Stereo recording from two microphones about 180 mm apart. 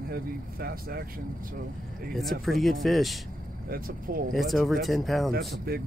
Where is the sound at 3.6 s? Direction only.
50° right (ahead or behind).